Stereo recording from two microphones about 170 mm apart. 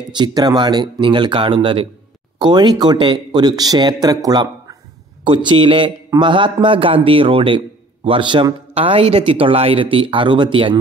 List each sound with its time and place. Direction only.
0.1 s a man's voice: 25° right (ahead or behind)